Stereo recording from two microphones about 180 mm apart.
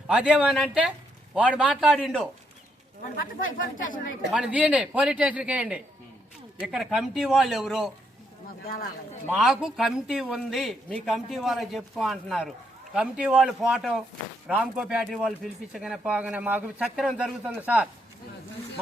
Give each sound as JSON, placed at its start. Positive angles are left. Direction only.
{"t": 0.1, "sound": "speech", "side_deg": -5}
{"t": 3.6, "sound": "speech", "side_deg": 50}
{"t": 4.3, "sound": "a man's voice", "side_deg": -5}
{"t": 9.3, "sound": "speech", "side_deg": 0}